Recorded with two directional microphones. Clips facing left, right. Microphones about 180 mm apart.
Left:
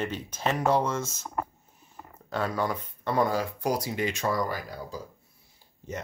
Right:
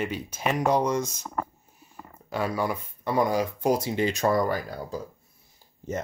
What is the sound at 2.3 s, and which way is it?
Speech, 10° right (ahead or behind).